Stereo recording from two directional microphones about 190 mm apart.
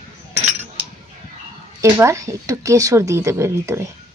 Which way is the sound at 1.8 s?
15° right (ahead or behind).